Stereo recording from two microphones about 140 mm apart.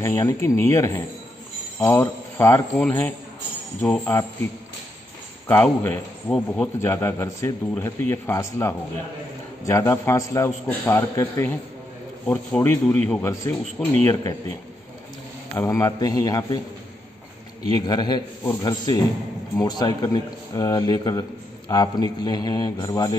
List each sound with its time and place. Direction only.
0.0 s a man's voice: 20° left (ahead or behind)
4.1 s a man's voice: 15° left (ahead or behind)
5.5 s a man's voice: 15° left (ahead or behind)
6.8 s a man's voice: 15° left (ahead or behind)
12.3 s a man's voice: 10° left (ahead or behind)
13.2 s a man's voice: 20° left (ahead or behind)
15.5 s a man's voice: 20° left (ahead or behind)
17.7 s a man's voice: 30° left (ahead or behind)